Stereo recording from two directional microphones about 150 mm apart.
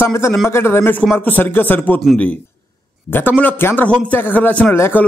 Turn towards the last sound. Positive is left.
turn(degrees=15)  # may be behind; listen again after turning